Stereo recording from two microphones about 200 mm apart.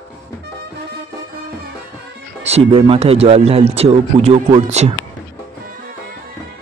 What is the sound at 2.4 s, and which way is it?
A man's voice, 30° right (ahead or behind).